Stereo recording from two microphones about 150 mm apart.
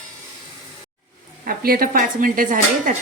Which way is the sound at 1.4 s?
75° right (ahead or behind).